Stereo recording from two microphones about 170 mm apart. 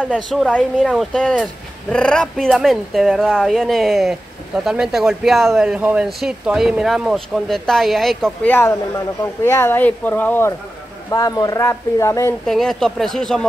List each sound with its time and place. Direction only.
0.1 s speech: centre (ahead or behind)
11.1 s speech: 20° left (ahead or behind)
12.4 s speech: centre (ahead or behind)